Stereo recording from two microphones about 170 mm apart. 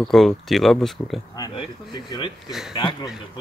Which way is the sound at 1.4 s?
25° left (ahead or behind).